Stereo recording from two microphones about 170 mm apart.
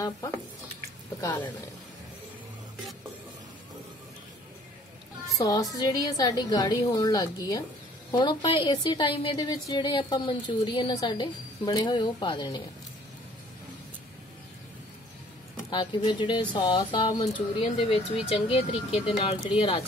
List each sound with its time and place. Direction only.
5.4 s a woman's voice: 20° left (ahead or behind)
15.7 s a woman's voice: 25° left (ahead or behind)